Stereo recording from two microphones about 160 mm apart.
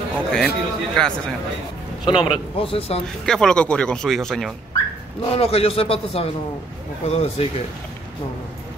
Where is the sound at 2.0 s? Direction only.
30° left (ahead or behind).